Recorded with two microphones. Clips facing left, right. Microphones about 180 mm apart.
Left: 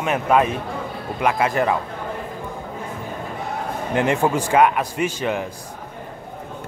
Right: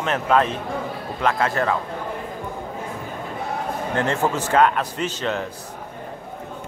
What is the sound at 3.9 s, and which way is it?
Speech, 15° left (ahead or behind).